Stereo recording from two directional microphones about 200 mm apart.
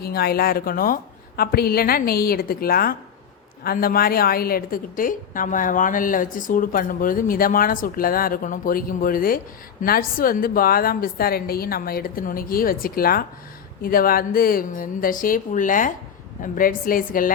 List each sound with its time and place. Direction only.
0.0 s a woman's voice: 50° left (ahead or behind)